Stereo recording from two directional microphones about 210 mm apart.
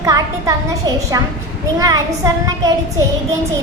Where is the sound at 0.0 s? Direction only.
15° right (ahead or behind).